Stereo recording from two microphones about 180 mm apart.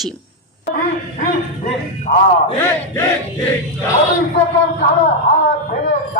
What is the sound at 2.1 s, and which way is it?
Speech, 45° left (ahead or behind).